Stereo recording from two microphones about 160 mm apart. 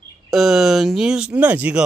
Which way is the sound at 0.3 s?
Centre (ahead or behind).